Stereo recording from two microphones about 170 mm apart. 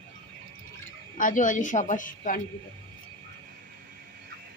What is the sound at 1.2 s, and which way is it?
A woman's voice, 50° left (ahead or behind).